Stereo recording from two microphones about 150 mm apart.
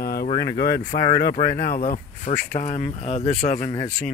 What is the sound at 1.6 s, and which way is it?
Speech, 75° left (ahead or behind).